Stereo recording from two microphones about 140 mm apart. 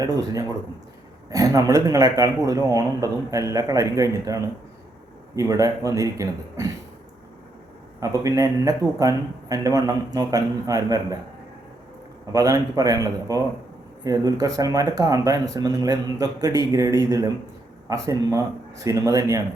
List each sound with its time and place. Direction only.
0.0 s speech: 25° right (ahead or behind)
8.0 s speech: 25° right (ahead or behind)
12.3 s speech: 25° right (ahead or behind)